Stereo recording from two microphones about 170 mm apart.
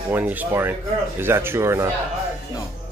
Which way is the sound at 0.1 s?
10° right (ahead or behind).